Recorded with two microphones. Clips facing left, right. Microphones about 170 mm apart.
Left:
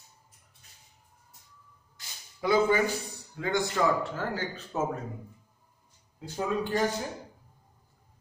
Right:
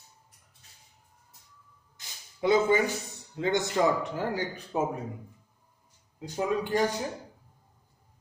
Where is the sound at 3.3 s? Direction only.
20° right (ahead or behind).